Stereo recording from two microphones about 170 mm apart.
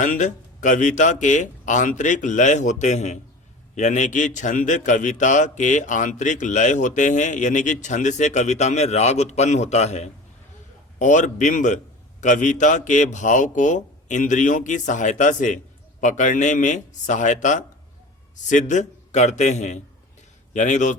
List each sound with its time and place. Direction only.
0.0 s a man's voice: 50° left (ahead or behind)